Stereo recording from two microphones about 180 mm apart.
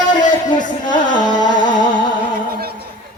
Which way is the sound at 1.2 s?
25° left (ahead or behind).